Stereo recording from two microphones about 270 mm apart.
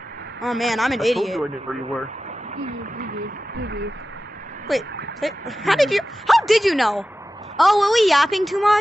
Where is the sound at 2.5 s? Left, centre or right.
Right.